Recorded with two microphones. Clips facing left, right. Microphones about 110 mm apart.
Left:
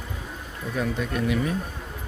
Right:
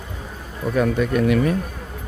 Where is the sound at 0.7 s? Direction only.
70° right (ahead or behind).